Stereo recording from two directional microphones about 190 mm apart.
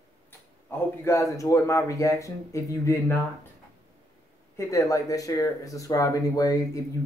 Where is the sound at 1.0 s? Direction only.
15° left (ahead or behind).